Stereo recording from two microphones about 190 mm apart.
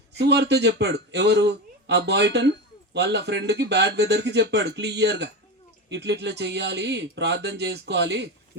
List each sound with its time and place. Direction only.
0.1 s speech: 65° right (ahead or behind)